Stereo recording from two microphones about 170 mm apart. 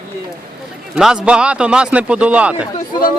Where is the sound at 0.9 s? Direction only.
5° right (ahead or behind).